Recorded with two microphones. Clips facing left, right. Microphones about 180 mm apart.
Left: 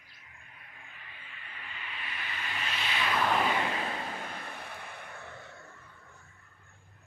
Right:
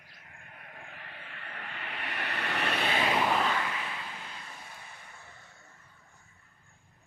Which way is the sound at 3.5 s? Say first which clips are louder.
Left 2 dB; 25° left (ahead or behind).